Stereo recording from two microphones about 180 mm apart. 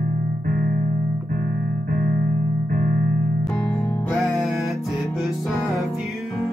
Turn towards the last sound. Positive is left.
turn(degrees=0)  # may be behind; listen again after turning